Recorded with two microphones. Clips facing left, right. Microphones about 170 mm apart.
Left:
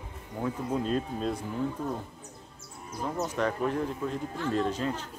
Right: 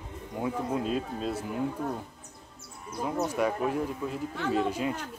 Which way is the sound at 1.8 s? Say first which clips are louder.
Even; 60° right (ahead or behind).